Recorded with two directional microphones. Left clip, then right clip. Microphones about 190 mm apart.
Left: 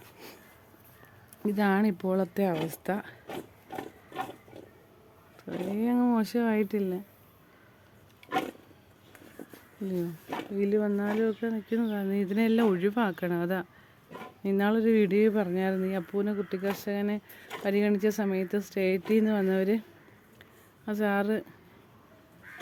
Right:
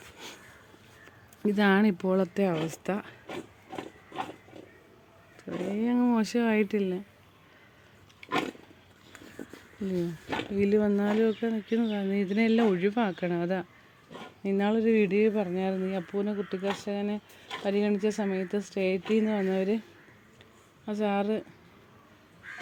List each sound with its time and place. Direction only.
1.4 s speech: 15° right (ahead or behind)
5.7 s speech: 5° right (ahead or behind)
8.2 s a sound: 45° right (ahead or behind)
10.5 s speech: 20° right (ahead or behind); by 19.8 s 10° left (ahead or behind)
20.8 s speech: 5° left (ahead or behind)